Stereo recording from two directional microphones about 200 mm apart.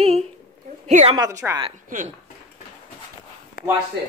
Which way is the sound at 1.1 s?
20° right (ahead or behind).